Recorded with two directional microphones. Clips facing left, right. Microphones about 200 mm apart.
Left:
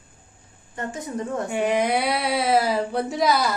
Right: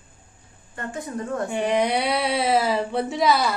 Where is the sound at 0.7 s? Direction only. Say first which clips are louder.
Left 1 dB; 20° left (ahead or behind).